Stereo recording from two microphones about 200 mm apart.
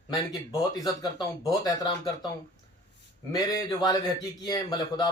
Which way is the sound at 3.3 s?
20° left (ahead or behind).